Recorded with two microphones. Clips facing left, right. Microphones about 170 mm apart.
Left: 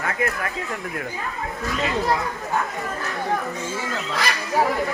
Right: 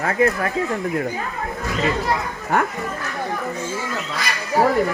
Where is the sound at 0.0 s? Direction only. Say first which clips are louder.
Right 6 dB; 30° right (ahead or behind).